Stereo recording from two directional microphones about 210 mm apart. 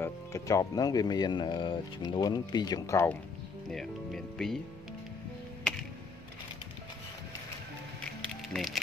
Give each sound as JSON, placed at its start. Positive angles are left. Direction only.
{"t": 0.0, "sound": "speech", "side_deg": 15}
{"t": 3.6, "sound": "speech", "side_deg": 0}
{"t": 8.2, "sound": "music", "side_deg": 0}